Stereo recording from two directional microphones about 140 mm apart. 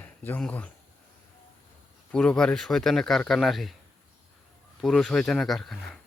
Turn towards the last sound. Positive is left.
turn(degrees=0)  # may be behind; listen again after turning